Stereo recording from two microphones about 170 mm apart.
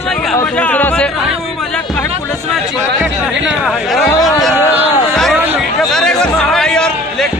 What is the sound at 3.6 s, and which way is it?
Speech, centre (ahead or behind).